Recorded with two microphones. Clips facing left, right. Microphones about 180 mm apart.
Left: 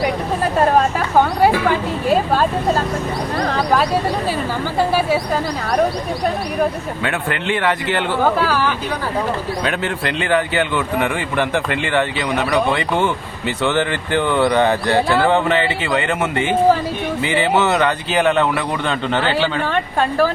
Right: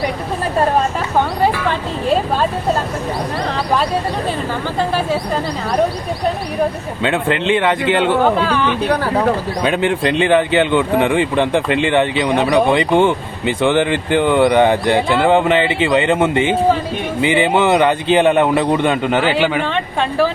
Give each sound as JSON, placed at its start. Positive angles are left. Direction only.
{"t": 7.0, "sound": "speech", "side_deg": -20}
{"t": 8.4, "sound": "a woman's voice", "side_deg": 5}
{"t": 9.6, "sound": "a man's voice", "side_deg": -20}
{"t": 19.6, "sound": "a woman's voice", "side_deg": 5}